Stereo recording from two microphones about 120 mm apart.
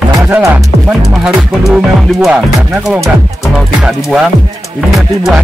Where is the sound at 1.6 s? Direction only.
5° right (ahead or behind).